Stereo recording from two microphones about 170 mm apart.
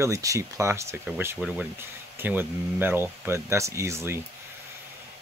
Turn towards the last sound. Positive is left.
turn(degrees=-15)  # may be behind; listen again after turning